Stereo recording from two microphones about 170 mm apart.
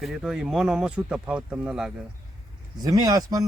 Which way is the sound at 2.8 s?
20° right (ahead or behind).